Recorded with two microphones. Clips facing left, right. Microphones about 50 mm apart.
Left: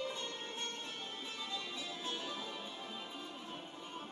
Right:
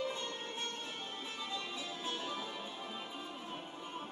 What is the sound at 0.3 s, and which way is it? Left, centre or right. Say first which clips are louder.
Music: right 2 dB; centre.